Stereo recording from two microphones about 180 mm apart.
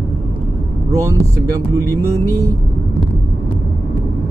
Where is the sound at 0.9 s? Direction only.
15° right (ahead or behind).